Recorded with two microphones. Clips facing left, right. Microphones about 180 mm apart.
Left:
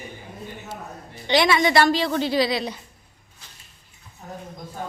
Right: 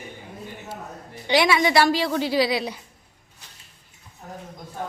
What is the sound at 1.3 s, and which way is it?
A woman's voice, 10° right (ahead or behind).